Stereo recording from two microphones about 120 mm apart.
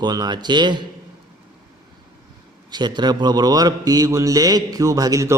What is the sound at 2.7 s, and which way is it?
A man's voice, 35° right (ahead or behind).